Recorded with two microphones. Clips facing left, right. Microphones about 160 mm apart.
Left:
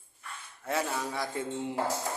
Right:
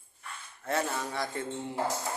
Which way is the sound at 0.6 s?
5° left (ahead or behind).